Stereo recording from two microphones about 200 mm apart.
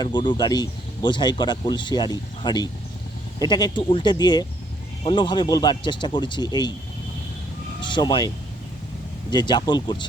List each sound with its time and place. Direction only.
0.0 s speech: 20° left (ahead or behind)
7.8 s speech: 25° left (ahead or behind)
9.3 s speech: 20° left (ahead or behind)